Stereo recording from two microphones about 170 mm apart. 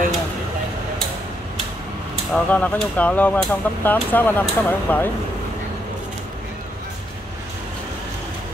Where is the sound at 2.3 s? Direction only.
10° left (ahead or behind).